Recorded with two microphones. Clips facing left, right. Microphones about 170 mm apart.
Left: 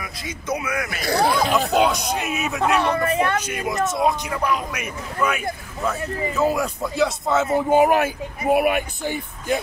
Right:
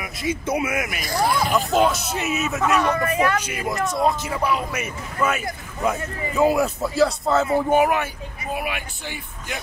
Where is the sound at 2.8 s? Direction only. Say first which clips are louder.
Even; 30° left (ahead or behind).